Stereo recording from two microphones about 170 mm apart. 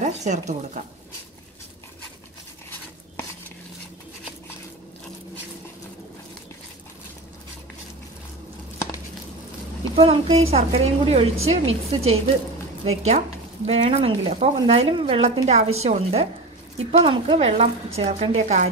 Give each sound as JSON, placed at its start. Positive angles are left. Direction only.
{"t": 0.0, "sound": "speech", "side_deg": -45}
{"t": 9.9, "sound": "a woman's voice", "side_deg": -35}